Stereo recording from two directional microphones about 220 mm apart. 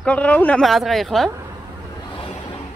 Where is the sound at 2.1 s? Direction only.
25° left (ahead or behind).